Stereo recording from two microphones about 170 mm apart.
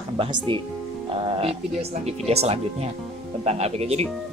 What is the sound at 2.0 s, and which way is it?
Speech, 40° right (ahead or behind).